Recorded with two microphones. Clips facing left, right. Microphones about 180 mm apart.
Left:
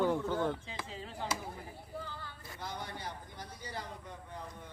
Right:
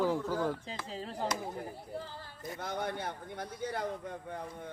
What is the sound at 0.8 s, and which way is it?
Speech, 40° right (ahead or behind).